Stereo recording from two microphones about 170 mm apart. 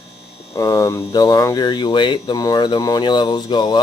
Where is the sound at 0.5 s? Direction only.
20° left (ahead or behind).